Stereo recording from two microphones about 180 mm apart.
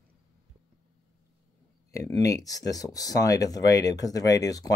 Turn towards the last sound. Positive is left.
turn(degrees=20)  # may be behind; listen again after turning